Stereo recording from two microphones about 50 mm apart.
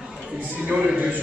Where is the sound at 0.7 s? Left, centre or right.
Right.